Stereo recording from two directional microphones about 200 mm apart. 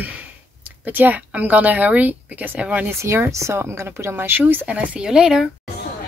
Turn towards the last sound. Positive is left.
turn(degrees=-5)  # may be behind; listen again after turning